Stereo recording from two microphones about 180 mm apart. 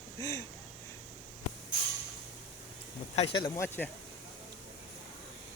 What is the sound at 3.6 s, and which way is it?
Speech, 10° left (ahead or behind).